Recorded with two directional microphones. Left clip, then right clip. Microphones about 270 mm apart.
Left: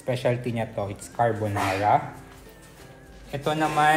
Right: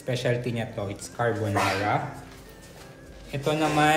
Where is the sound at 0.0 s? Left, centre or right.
Left.